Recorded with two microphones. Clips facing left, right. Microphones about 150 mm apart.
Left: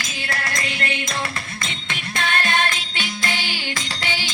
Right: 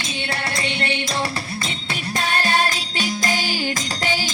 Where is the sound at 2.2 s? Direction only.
35° right (ahead or behind).